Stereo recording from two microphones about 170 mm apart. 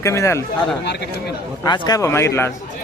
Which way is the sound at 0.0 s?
15° left (ahead or behind).